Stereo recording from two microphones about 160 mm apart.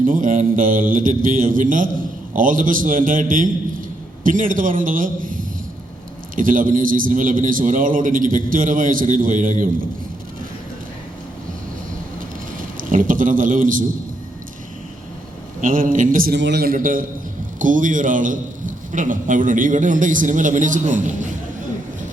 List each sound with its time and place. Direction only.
0.0 s a man's voice: 55° right (ahead or behind)
12.5 s a man's voice: 55° right (ahead or behind)
15.6 s a man's voice: 55° right (ahead or behind)